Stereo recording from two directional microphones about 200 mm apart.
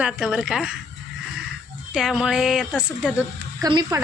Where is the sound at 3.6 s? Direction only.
20° right (ahead or behind).